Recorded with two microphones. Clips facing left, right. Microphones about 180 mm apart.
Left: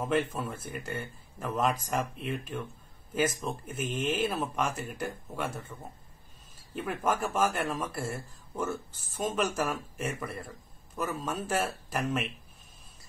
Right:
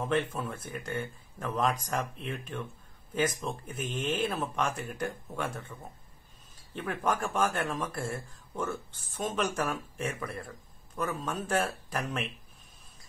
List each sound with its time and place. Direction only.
0.0 s speech: 5° left (ahead or behind)